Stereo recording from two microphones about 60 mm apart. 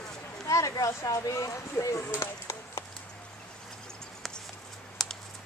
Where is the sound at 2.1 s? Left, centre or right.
Left.